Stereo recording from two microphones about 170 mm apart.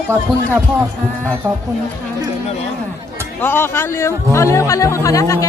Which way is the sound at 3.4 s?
15° left (ahead or behind).